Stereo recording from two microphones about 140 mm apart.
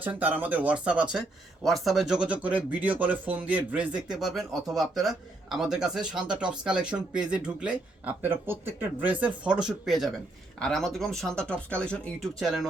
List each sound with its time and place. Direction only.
0.0 s speech: 10° right (ahead or behind)